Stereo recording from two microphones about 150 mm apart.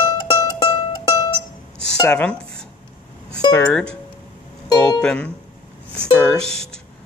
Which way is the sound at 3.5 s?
5° left (ahead or behind).